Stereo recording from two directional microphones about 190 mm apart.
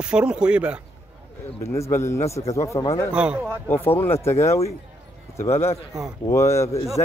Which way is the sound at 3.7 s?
10° left (ahead or behind).